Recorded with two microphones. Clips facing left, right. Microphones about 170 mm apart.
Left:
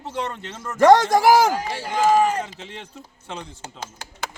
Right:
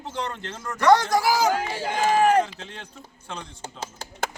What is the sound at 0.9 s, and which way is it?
Speech, 90° left.